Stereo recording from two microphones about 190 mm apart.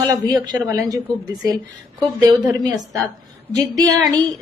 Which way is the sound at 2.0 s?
20° right (ahead or behind).